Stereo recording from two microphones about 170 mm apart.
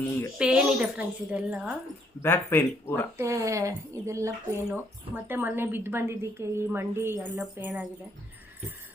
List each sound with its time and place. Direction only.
0.3 s a woman's voice: 5° right (ahead or behind)
2.2 s speech: 15° left (ahead or behind)
3.2 s a woman's voice: 20° right (ahead or behind)